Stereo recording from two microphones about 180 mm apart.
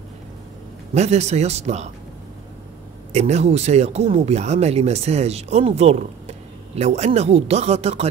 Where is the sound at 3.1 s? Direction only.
40° right (ahead or behind).